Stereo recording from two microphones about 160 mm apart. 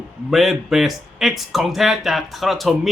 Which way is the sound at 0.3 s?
Centre (ahead or behind).